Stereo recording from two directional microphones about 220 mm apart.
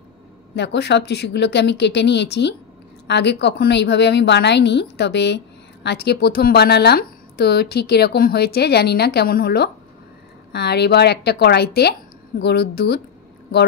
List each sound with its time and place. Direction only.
0.6 s speech: 50° left (ahead or behind)